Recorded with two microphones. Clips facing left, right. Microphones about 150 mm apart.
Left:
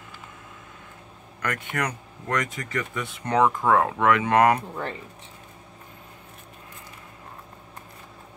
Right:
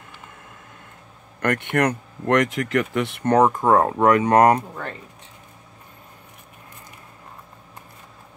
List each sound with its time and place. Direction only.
1.4 s speech: 60° right (ahead or behind)
3.3 s speech: 40° right (ahead or behind)